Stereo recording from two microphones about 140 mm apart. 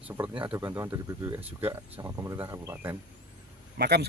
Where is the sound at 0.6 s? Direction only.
20° right (ahead or behind).